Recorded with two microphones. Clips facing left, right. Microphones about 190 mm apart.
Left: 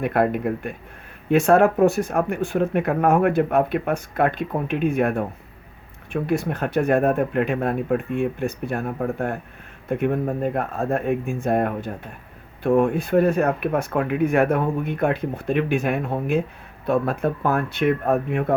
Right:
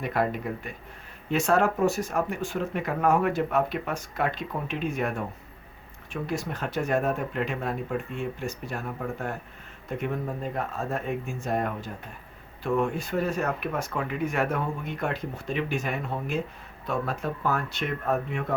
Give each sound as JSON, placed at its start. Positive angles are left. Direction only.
{"t": 0.0, "sound": "speech", "side_deg": 55}
{"t": 6.2, "sound": "speech", "side_deg": 60}